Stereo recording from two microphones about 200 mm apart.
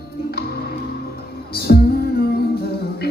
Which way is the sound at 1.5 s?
50° left (ahead or behind).